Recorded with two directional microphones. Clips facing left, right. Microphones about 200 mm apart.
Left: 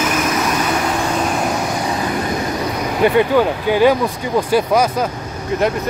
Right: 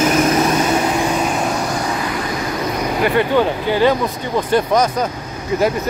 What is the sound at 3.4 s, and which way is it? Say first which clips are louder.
Speech: left 1 dB; 10° left (ahead or behind).